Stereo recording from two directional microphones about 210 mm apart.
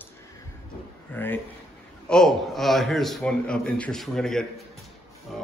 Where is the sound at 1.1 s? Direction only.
10° left (ahead or behind).